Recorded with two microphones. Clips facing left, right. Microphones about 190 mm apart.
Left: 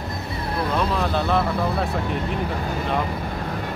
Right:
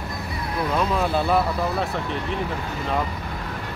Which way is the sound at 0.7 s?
10° right (ahead or behind).